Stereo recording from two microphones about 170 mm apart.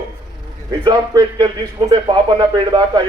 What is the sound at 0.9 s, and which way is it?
Speech, 25° right (ahead or behind).